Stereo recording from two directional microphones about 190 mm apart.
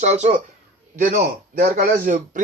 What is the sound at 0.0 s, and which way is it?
Speech, 35° right (ahead or behind).